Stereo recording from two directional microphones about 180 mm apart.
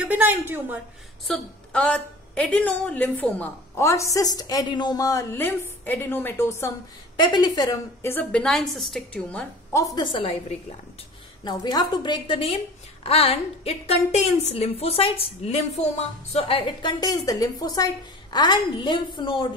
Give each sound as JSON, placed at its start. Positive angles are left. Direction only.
{"t": 0.0, "sound": "a woman's voice", "side_deg": -10}
{"t": 1.2, "sound": "a woman's voice", "side_deg": 5}
{"t": 7.2, "sound": "a woman's voice", "side_deg": 25}
{"t": 9.9, "sound": "a woman's voice", "side_deg": 25}
{"t": 11.4, "sound": "a woman's voice", "side_deg": 20}